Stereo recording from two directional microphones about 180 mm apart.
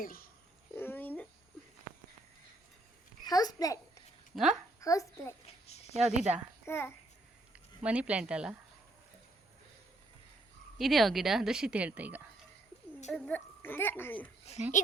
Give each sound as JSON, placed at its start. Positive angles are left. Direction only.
{"t": 0.0, "sound": "a child's voice", "side_deg": 55}
{"t": 0.8, "sound": "a sound", "side_deg": 10}
{"t": 3.2, "sound": "a child's voice", "side_deg": 20}
{"t": 4.4, "sound": "a woman's voice", "side_deg": 0}
{"t": 4.8, "sound": "speech", "side_deg": 20}
{"t": 5.5, "sound": "a sound", "side_deg": 35}
{"t": 6.0, "sound": "a woman's voice", "side_deg": -5}
{"t": 6.7, "sound": "speech", "side_deg": 15}
{"t": 7.5, "sound": "speech", "side_deg": -5}
{"t": 10.8, "sound": "a woman's voice", "side_deg": 0}
{"t": 13.1, "sound": "speech", "side_deg": 10}
{"t": 14.5, "sound": "a child's voice", "side_deg": 35}